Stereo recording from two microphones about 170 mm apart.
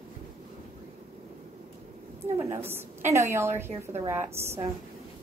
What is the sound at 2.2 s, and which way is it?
A woman's voice, 15° right (ahead or behind).